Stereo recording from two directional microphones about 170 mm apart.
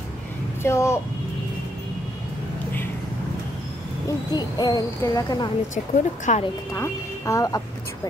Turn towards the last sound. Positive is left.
turn(degrees=20)  # may be behind; listen again after turning